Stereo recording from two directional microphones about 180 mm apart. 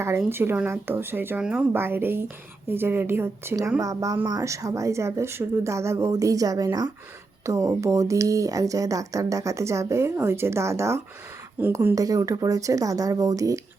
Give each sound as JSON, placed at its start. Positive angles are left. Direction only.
{"t": 0.3, "sound": "speech", "side_deg": -10}